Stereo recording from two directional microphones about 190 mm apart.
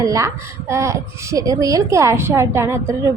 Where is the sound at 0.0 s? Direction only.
15° right (ahead or behind).